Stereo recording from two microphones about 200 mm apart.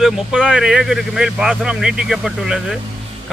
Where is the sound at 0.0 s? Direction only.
5° right (ahead or behind).